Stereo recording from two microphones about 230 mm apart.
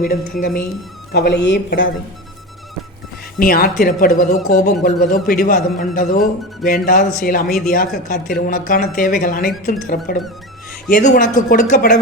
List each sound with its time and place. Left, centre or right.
0.0 s speech: left
3.3 s speech: left